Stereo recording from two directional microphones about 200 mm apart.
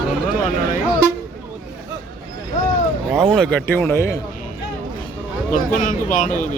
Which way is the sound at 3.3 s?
5° left (ahead or behind).